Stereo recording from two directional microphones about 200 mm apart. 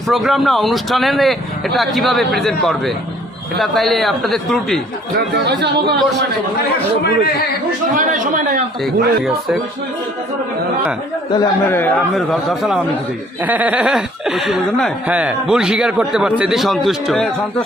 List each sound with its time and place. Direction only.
0.1 s speech: centre (ahead or behind)
5.4 s speech: 60° right (ahead or behind)
7.9 s speech: 40° right (ahead or behind)
8.8 s speech: centre (ahead or behind)
11.3 s speech: 10° left (ahead or behind)